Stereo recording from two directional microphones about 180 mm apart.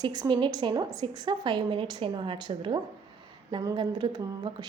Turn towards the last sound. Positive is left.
turn(degrees=-25)  # may be behind; listen again after turning